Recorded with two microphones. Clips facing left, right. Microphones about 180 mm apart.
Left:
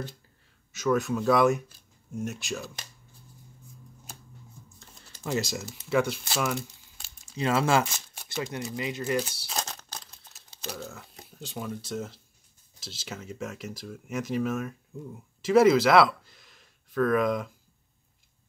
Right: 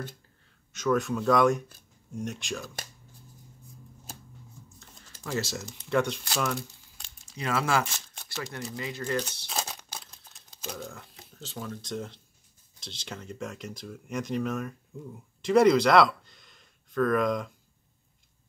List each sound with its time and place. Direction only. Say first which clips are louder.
0.7 s speech: left 1 dB; 5° left (ahead or behind)
5.2 s speech: left 2 dB; 15° left (ahead or behind)
7.3 s speech: left 3 dB; 25° left (ahead or behind)
7.9 s speech: left 4 dB; 15° left (ahead or behind)
9.6 s crumpling: even; 10° right (ahead or behind)
10.0 s a sound: even; centre (ahead or behind)
11.3 s speech: left 3 dB; 15° left (ahead or behind)